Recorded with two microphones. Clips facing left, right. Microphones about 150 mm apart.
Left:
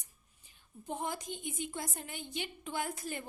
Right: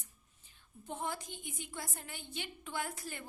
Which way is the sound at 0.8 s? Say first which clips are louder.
Left 2 dB; 15° left (ahead or behind).